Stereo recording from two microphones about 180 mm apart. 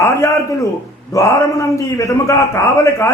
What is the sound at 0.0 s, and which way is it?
A man's voice, 15° left (ahead or behind).